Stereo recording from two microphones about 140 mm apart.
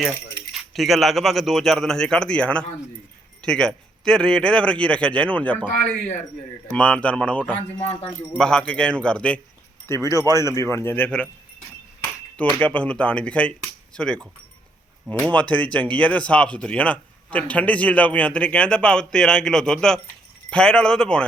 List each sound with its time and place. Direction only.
0.7 s a man's voice: centre (ahead or behind)
9.8 s speech: 20° left (ahead or behind)
12.5 s speech: 10° left (ahead or behind)
15.3 s a man's voice: 10° left (ahead or behind)